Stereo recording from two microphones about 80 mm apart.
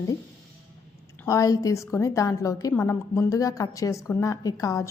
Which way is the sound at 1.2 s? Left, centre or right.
Left.